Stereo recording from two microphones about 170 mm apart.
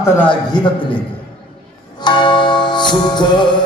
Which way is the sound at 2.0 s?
30° left (ahead or behind).